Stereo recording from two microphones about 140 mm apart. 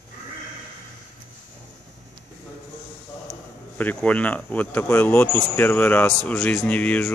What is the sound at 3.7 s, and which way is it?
Speech, 10° left (ahead or behind).